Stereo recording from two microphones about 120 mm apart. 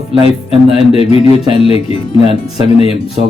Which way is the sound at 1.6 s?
50° left (ahead or behind).